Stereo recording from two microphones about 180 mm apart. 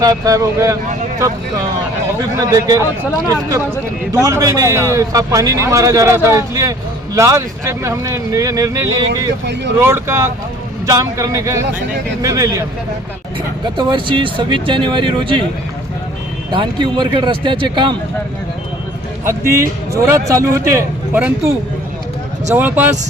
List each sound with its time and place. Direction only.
0.0 s speech: 20° right (ahead or behind)
2.4 s a man's voice: 20° right (ahead or behind)
4.1 s a man's voice: 20° right (ahead or behind)
13.7 s speech: 25° right (ahead or behind)
16.5 s speech: 25° right (ahead or behind)
19.2 s a man's voice: 15° right (ahead or behind)
22.5 s a man's voice: 10° right (ahead or behind)